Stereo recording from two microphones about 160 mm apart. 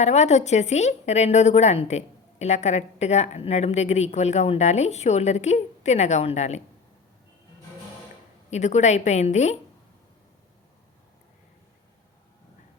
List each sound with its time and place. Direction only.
0.0 s a woman's voice: 45° left (ahead or behind)
8.4 s a woman's voice: 45° left (ahead or behind)